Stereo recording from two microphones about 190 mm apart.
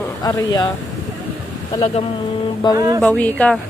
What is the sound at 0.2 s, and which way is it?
Speech, 20° left (ahead or behind).